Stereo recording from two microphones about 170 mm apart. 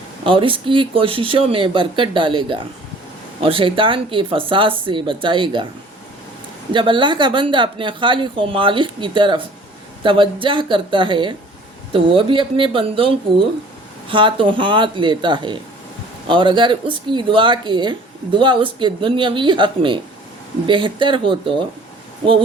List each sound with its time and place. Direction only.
0.3 s speech: 30° right (ahead or behind)
6.7 s speech: 30° right (ahead or behind)